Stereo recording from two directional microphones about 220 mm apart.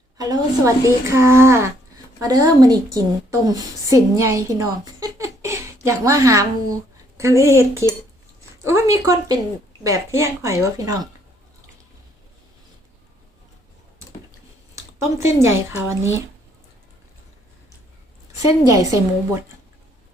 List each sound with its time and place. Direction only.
0.2 s a woman's voice: 15° right (ahead or behind)
8.6 s a woman's voice: 15° right (ahead or behind)
14.8 s a woman's voice: 10° right (ahead or behind)
18.3 s a woman's voice: 15° right (ahead or behind)